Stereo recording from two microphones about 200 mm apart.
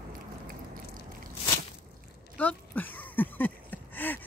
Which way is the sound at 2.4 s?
10° left (ahead or behind).